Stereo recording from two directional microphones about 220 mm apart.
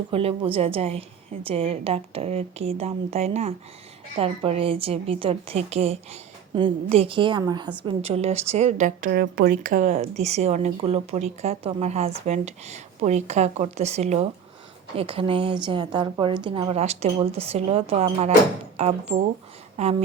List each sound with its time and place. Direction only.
0.1 s a woman's voice: 25° right (ahead or behind)